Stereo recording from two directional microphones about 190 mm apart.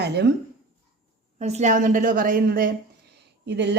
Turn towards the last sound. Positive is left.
turn(degrees=-65)  # may be behind; listen again after turning